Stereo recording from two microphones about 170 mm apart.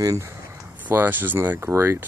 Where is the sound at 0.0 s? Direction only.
20° right (ahead or behind).